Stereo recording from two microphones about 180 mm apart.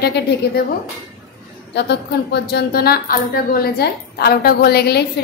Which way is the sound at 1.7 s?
70° left (ahead or behind).